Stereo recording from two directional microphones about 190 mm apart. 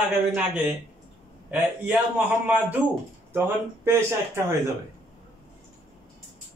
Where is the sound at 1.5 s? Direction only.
10° right (ahead or behind).